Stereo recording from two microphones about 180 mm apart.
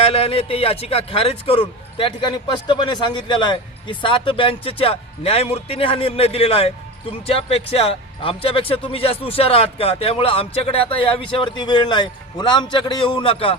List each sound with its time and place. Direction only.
0.0 s speech: 30° left (ahead or behind)